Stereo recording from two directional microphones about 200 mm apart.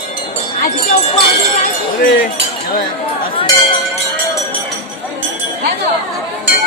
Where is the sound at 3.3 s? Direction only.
25° left (ahead or behind).